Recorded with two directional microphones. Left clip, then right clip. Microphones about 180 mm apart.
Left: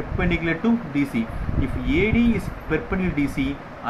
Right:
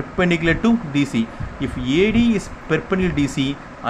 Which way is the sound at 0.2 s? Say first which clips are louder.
Right 6 dB; 50° right (ahead or behind).